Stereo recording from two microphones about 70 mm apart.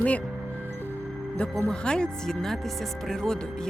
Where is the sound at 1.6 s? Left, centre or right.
Centre.